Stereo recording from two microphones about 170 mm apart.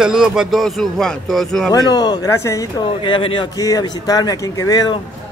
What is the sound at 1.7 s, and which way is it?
Speech, 25° left (ahead or behind).